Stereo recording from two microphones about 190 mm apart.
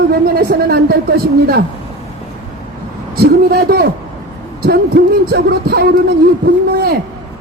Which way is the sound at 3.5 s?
55° right (ahead or behind).